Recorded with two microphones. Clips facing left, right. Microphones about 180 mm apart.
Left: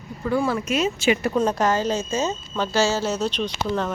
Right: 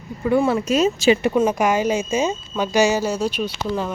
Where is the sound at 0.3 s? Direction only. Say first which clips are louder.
Right 5 dB; 25° right (ahead or behind).